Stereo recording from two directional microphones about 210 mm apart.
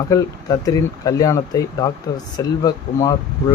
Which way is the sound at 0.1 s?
15° left (ahead or behind).